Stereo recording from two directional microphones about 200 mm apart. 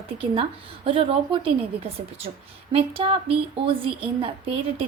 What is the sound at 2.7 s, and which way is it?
Speech, 30° right (ahead or behind).